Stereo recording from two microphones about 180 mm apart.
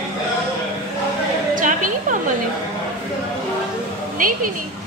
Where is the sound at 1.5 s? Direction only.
45° right (ahead or behind).